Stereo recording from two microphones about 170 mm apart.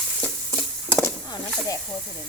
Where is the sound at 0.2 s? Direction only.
Centre (ahead or behind).